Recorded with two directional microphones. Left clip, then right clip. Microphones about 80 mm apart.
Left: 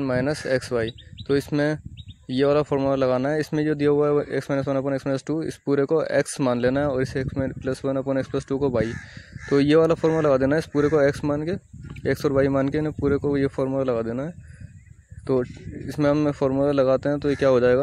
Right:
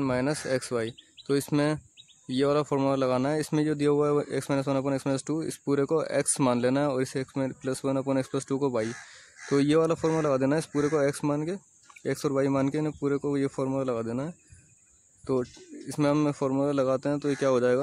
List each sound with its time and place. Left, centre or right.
0.1 s speech: centre
15.2 s speech: left